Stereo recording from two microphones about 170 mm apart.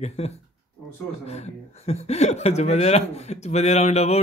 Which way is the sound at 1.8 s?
40° left (ahead or behind).